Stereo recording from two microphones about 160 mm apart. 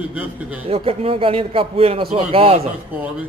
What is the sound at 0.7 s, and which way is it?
Speech, 35° right (ahead or behind).